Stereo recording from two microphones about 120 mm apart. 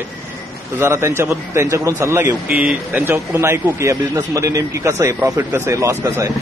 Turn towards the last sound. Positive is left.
turn(degrees=-25)  # may be behind; listen again after turning